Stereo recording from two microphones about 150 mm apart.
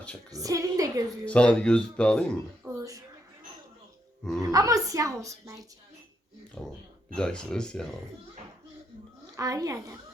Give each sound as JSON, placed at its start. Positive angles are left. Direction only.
{"t": 0.3, "sound": "a woman's voice", "side_deg": -25}
{"t": 1.2, "sound": "speech", "side_deg": 10}
{"t": 2.6, "sound": "a sound", "side_deg": -20}
{"t": 4.2, "sound": "speech", "side_deg": 5}
{"t": 4.4, "sound": "a woman's voice", "side_deg": -25}
{"t": 6.6, "sound": "speech", "side_deg": 5}
{"t": 9.3, "sound": "a woman's voice", "side_deg": -25}